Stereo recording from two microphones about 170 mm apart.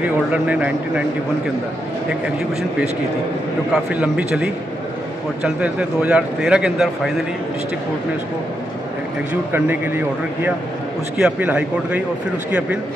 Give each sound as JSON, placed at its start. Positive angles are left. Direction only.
{"t": 0.3, "sound": "speech", "side_deg": -10}
{"t": 3.7, "sound": "a man's voice", "side_deg": -5}
{"t": 9.3, "sound": "speech", "side_deg": -10}